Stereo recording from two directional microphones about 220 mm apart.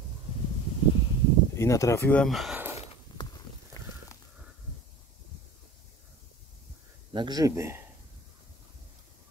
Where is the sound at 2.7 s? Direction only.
30° left (ahead or behind).